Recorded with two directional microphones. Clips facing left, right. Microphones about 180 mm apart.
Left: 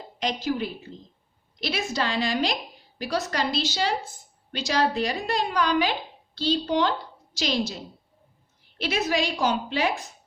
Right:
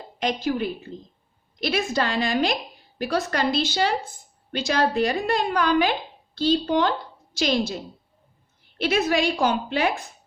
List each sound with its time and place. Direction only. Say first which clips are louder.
0.2 s a woman's voice: right 3 dB; 55° right (ahead or behind)
8.8 s a woman's voice: right 4 dB; 55° right (ahead or behind)